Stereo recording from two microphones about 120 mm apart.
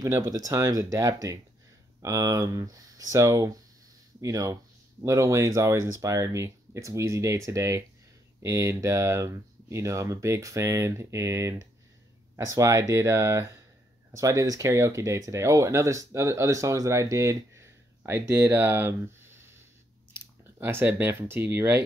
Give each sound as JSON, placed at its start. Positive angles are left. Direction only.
{"t": 0.0, "sound": "speech", "side_deg": -30}